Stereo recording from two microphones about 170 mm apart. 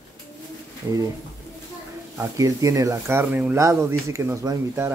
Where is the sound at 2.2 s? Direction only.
20° right (ahead or behind).